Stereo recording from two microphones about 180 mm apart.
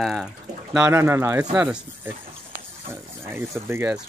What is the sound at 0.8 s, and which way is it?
Speech, 15° right (ahead or behind).